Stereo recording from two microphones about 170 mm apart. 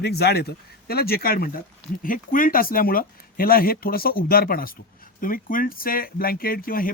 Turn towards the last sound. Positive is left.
turn(degrees=60)  # may be behind; listen again after turning